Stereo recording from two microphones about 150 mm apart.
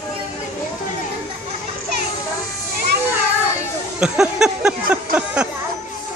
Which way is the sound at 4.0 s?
5° right (ahead or behind).